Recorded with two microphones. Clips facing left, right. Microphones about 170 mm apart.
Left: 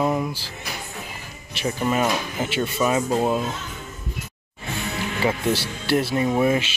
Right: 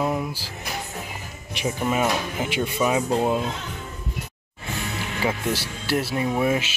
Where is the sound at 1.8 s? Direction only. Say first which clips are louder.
Left 1 dB; 10° right (ahead or behind).